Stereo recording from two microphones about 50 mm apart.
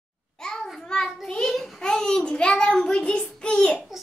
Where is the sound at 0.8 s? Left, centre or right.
Centre.